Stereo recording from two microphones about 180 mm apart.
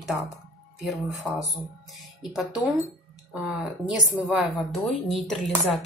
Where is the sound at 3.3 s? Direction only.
5° right (ahead or behind).